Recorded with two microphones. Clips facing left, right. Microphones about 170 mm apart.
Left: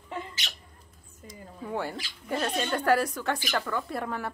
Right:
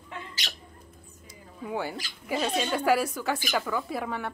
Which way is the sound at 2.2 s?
5° right (ahead or behind).